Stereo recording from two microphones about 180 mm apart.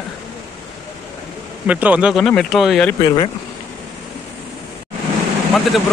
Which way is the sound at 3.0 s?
30° left (ahead or behind).